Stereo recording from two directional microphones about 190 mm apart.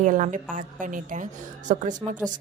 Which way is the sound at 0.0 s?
45° right (ahead or behind).